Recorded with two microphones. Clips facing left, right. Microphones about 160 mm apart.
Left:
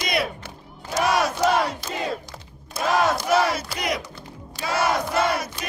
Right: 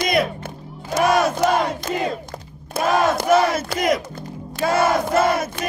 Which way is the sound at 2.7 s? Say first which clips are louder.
Right 3 dB; 50° right (ahead or behind).